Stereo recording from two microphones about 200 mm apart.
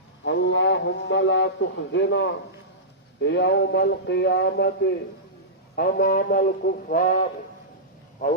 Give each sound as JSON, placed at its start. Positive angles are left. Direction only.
{"t": 0.3, "sound": "speech", "side_deg": 65}